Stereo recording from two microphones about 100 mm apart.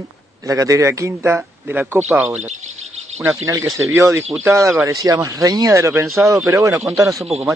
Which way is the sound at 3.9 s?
30° right (ahead or behind).